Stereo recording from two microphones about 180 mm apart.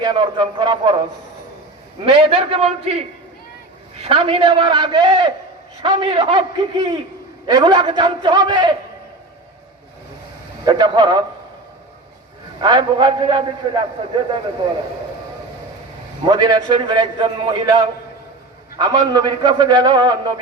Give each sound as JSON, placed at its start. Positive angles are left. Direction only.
{"t": 0.0, "sound": "a man's voice", "side_deg": -25}
{"t": 2.0, "sound": "a man's voice", "side_deg": -30}
{"t": 4.0, "sound": "a man's voice", "side_deg": -30}
{"t": 10.7, "sound": "a man's voice", "side_deg": -25}
{"t": 12.6, "sound": "a man's voice", "side_deg": -25}
{"t": 16.2, "sound": "a man's voice", "side_deg": -25}